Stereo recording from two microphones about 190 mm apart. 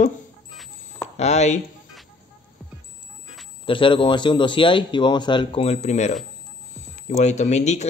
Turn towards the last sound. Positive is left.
turn(degrees=35)  # may be behind; listen again after turning